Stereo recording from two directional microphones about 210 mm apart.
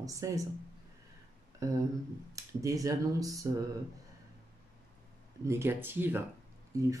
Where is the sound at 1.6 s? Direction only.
15° right (ahead or behind).